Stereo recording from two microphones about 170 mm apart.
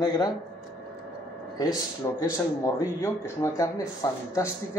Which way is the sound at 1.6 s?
20° left (ahead or behind).